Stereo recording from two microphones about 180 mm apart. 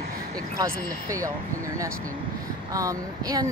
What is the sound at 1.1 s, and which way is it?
Speech, 15° right (ahead or behind).